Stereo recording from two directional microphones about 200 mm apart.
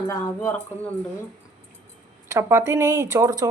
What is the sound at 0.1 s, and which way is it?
Speech, 15° left (ahead or behind).